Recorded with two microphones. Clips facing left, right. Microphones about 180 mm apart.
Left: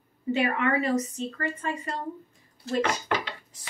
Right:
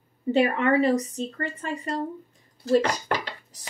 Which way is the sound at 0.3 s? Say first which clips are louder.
Right 4 dB; 35° right (ahead or behind).